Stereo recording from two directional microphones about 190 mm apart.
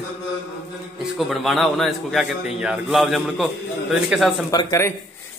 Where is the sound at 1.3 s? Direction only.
Centre (ahead or behind).